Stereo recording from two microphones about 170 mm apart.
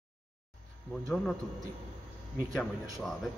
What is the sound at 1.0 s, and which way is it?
Speech, centre (ahead or behind).